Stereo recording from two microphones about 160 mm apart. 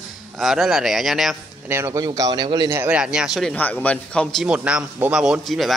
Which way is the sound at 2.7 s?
10° right (ahead or behind).